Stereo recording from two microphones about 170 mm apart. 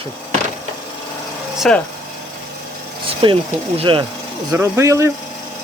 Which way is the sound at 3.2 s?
30° right (ahead or behind).